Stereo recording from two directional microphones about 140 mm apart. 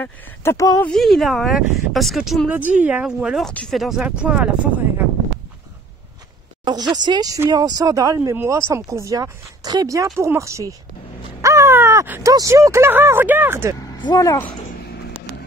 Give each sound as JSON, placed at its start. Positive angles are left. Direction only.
{"t": 0.0, "sound": "speech", "side_deg": 15}
{"t": 0.8, "sound": "speech", "side_deg": 0}
{"t": 3.4, "sound": "speech", "side_deg": 5}
{"t": 6.6, "sound": "speech", "side_deg": -30}
{"t": 13.7, "sound": "speech", "side_deg": 25}